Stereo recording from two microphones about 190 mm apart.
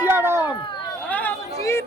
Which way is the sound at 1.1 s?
10° left (ahead or behind).